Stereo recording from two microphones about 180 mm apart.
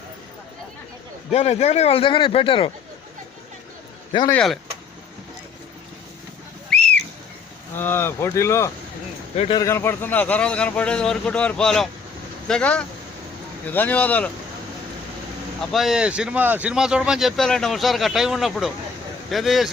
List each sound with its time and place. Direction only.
1.3 s speech: 35° left (ahead or behind)
4.3 s speech: 5° left (ahead or behind)
6.7 s whistle: centre (ahead or behind)
7.8 s a man's voice: 10° left (ahead or behind)
9.3 s speech: 35° left (ahead or behind)
9.6 s a man's voice: 15° left (ahead or behind)
15.7 s speech: centre (ahead or behind)